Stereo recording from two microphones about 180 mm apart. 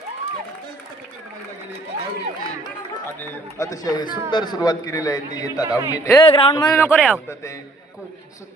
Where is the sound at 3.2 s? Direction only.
20° left (ahead or behind).